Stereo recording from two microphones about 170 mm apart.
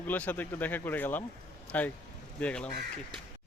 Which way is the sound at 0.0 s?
10° left (ahead or behind).